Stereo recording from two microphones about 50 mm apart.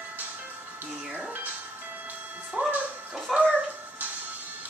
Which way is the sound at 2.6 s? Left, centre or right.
Right.